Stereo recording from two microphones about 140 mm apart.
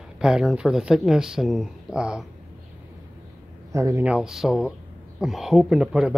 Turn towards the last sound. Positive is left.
turn(degrees=-5)  # may be behind; listen again after turning